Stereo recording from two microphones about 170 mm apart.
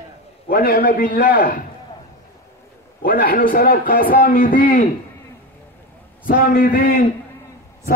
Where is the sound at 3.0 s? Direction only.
55° left (ahead or behind).